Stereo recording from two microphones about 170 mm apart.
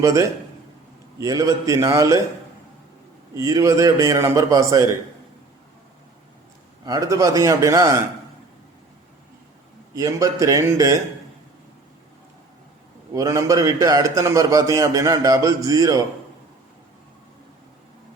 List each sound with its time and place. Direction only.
0.0 s a man's voice: 20° right (ahead or behind)
3.3 s a man's voice: 20° right (ahead or behind)
6.8 s a man's voice: 20° right (ahead or behind)
9.9 s a man's voice: 20° right (ahead or behind)
13.1 s a man's voice: 20° right (ahead or behind)